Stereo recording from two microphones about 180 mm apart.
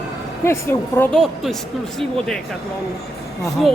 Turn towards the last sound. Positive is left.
turn(degrees=0)  # may be behind; listen again after turning